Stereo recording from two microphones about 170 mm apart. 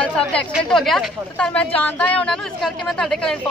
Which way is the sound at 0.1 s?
5° left (ahead or behind).